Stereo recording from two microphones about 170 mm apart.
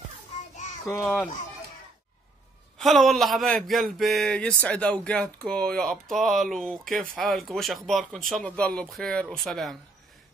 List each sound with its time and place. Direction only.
0.8 s speech: 15° left (ahead or behind)
2.8 s speech: centre (ahead or behind)